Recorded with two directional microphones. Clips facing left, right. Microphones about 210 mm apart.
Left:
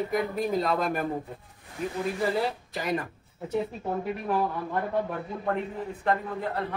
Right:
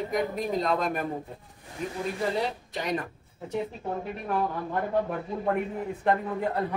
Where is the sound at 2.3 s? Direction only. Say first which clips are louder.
Left 1 dB; 5° left (ahead or behind).